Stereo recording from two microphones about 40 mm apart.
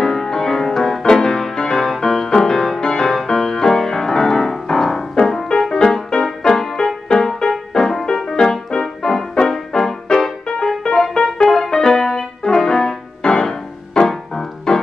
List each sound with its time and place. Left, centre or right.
0.0 s music: centre